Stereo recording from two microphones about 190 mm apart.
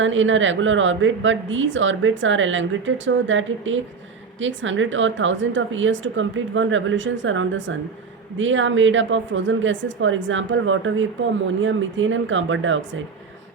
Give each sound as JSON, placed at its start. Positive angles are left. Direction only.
{"t": 0.0, "sound": "a woman's voice", "side_deg": -85}